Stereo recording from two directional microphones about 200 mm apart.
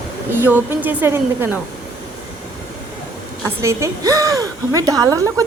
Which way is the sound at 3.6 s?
15° right (ahead or behind).